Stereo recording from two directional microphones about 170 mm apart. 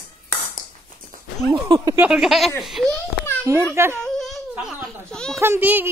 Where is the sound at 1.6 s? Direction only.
20° right (ahead or behind).